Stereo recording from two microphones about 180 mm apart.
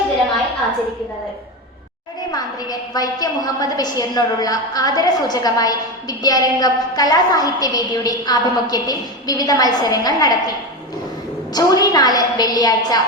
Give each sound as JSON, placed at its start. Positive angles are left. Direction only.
{"t": 2.3, "sound": "a woman's voice", "side_deg": 20}
{"t": 11.5, "sound": "a woman's voice", "side_deg": 20}